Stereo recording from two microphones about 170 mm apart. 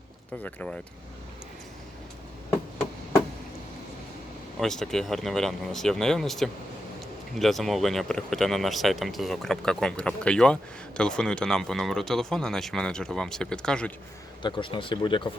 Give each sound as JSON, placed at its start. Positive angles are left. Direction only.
{"t": 0.4, "sound": "speech", "side_deg": 5}
{"t": 4.6, "sound": "speech", "side_deg": 5}
{"t": 14.4, "sound": "speech", "side_deg": 30}